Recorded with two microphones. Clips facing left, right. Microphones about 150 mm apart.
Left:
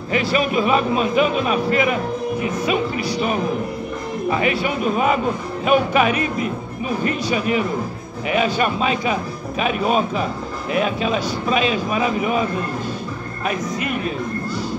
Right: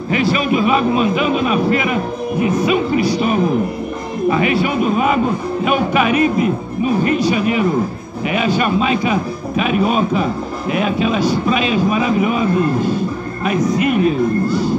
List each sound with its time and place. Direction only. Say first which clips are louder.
0.1 s a man's voice: right 3 dB; 35° left (ahead or behind)
5.7 s a man's voice: even; 35° left (ahead or behind)